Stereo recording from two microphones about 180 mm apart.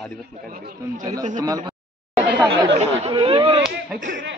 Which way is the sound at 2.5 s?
35° right (ahead or behind).